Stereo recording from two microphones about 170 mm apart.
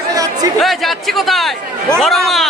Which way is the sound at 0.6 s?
Centre (ahead or behind).